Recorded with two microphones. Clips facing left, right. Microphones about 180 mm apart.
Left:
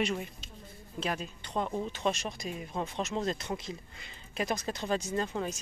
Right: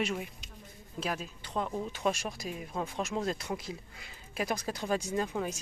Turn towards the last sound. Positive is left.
turn(degrees=-10)  # may be behind; listen again after turning